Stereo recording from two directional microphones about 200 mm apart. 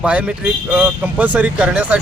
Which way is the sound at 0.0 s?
5° right (ahead or behind).